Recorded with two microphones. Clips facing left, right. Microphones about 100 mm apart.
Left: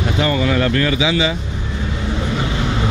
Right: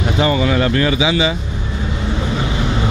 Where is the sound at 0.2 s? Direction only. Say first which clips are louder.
Right 2 dB; 10° right (ahead or behind).